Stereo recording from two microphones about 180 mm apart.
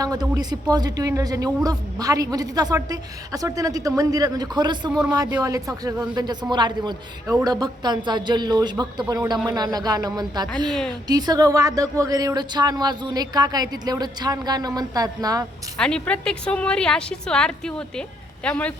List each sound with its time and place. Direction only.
0.0 s a woman's voice: 20° right (ahead or behind)
15.8 s a woman's voice: 5° left (ahead or behind)